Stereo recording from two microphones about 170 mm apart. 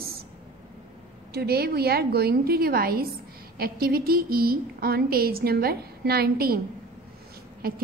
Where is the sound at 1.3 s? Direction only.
70° right (ahead or behind).